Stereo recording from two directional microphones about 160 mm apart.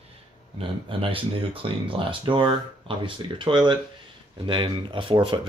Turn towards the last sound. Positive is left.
turn(degrees=-30)  # may be behind; listen again after turning